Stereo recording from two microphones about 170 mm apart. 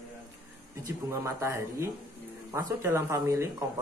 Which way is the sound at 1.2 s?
15° right (ahead or behind).